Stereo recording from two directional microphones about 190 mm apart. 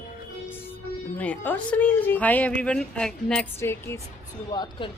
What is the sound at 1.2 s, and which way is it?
A woman's voice, 5° left (ahead or behind).